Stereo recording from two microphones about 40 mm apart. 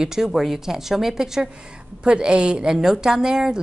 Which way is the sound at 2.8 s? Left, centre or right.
Centre.